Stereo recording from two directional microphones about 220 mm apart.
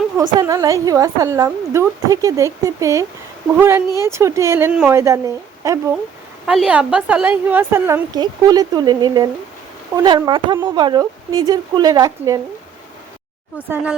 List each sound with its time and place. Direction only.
0.2 s a woman's voice: 15° right (ahead or behind)
6.4 s a woman's voice: centre (ahead or behind)
13.6 s a woman's voice: 5° right (ahead or behind)